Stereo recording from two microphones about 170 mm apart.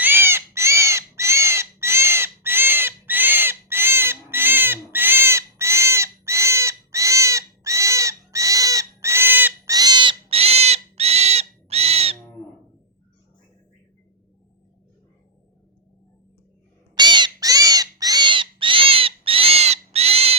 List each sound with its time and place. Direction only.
0.0 s bird: 10° right (ahead or behind); by 12.1 s 35° right (ahead or behind)
16.9 s owl: 25° right (ahead or behind)